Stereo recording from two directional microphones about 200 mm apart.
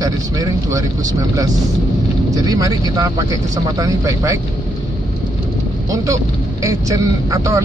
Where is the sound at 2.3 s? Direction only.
15° right (ahead or behind).